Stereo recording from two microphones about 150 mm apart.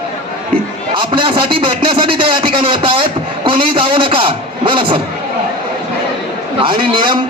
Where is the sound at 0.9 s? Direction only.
35° right (ahead or behind).